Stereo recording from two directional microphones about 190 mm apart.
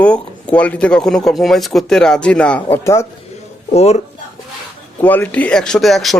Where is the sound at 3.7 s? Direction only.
35° left (ahead or behind).